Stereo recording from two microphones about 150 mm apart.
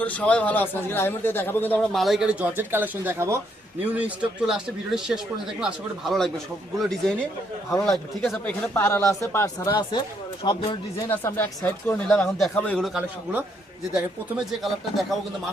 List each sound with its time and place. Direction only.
0.0 s a man's voice: 10° left (ahead or behind)
2.0 s speech: centre (ahead or behind); by 10.0 s 25° left (ahead or behind)
10.4 s speech: 40° left (ahead or behind)
11.1 s a man's voice: 15° left (ahead or behind); by 14.7 s 5° right (ahead or behind)